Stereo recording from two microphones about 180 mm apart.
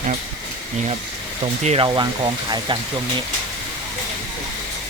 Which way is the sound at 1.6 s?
30° right (ahead or behind).